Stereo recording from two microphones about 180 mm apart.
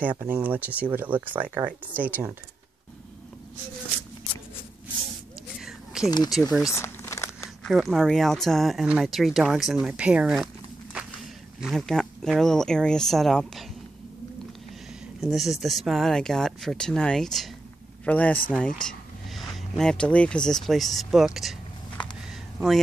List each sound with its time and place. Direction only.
0.0 s speech: 10° right (ahead or behind)
5.6 s a sound: 5° right (ahead or behind)
6.0 s speech: 20° left (ahead or behind)
6.6 s crumpling: 15° left (ahead or behind)
7.6 s speech: centre (ahead or behind)
15.1 s speech: centre (ahead or behind)
18.5 s a sound: 5° left (ahead or behind)
19.8 s speech: 5° left (ahead or behind)